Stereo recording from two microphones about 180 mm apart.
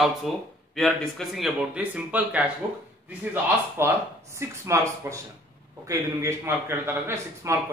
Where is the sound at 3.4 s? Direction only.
15° right (ahead or behind).